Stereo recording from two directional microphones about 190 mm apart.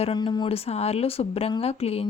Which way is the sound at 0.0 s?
25° left (ahead or behind).